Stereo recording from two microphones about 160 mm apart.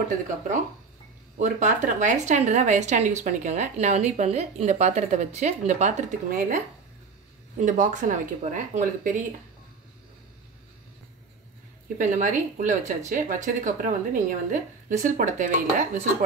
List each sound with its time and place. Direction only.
1.4 s a woman's voice: 50° right (ahead or behind)
7.5 s a woman's voice: 55° right (ahead or behind)
12.0 s a woman's voice: 55° right (ahead or behind)